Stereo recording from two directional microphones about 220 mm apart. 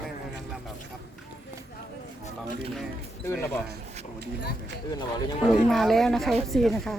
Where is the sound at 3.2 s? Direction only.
10° left (ahead or behind).